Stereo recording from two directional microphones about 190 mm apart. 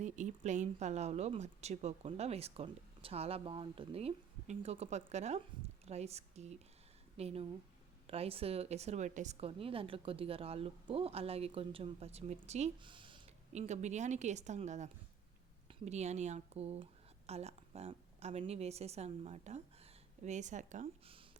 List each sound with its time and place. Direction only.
0.0 s speech: 40° right (ahead or behind)